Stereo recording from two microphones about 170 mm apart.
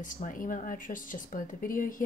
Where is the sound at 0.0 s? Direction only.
50° left (ahead or behind).